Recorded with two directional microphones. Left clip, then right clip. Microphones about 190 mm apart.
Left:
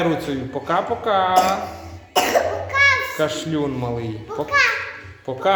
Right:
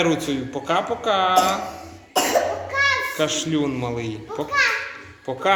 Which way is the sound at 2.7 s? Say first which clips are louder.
Left 5 dB; centre (ahead or behind).